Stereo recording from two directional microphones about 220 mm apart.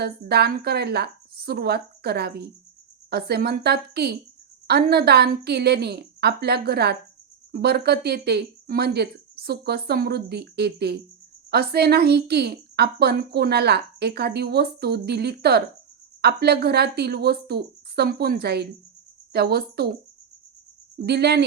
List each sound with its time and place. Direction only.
0.0 s a woman's voice: 45° right (ahead or behind)
21.0 s a woman's voice: 45° right (ahead or behind)